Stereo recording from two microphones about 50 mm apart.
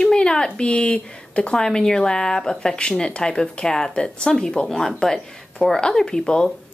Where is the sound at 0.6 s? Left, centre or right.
Centre.